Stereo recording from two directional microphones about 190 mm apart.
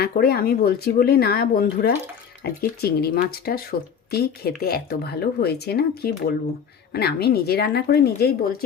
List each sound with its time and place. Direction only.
0.0 s speech: 55° left (ahead or behind)